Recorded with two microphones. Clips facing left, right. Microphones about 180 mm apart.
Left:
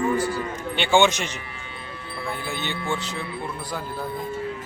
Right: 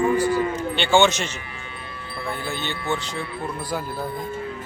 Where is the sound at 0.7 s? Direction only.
10° left (ahead or behind).